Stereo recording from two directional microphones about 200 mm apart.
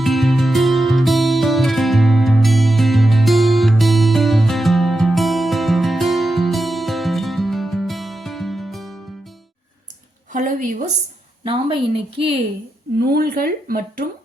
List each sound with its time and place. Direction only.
0.0 s music: centre (ahead or behind)
10.3 s a sound: 40° right (ahead or behind)
11.4 s a woman's voice: 25° right (ahead or behind)
13.1 s speech: 50° right (ahead or behind)